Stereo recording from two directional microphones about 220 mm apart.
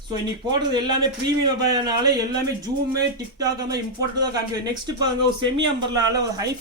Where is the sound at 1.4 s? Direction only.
20° right (ahead or behind).